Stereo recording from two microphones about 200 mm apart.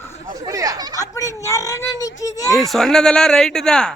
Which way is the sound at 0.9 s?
15° left (ahead or behind).